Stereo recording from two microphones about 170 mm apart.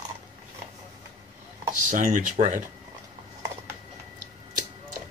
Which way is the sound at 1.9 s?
50° right (ahead or behind).